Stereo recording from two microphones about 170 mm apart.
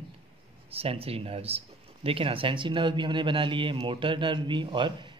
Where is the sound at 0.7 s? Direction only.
35° right (ahead or behind).